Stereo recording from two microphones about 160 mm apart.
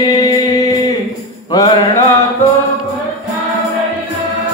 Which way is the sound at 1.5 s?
25° left (ahead or behind).